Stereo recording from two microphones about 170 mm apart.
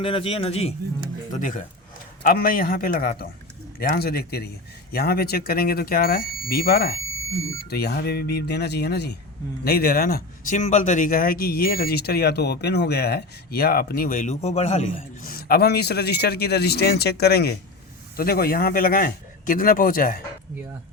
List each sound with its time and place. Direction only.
0.0 s a man's voice: 30° left (ahead or behind)
1.3 s speech: 50° left (ahead or behind)